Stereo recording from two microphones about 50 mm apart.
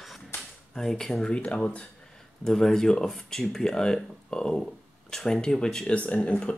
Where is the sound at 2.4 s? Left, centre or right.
Centre.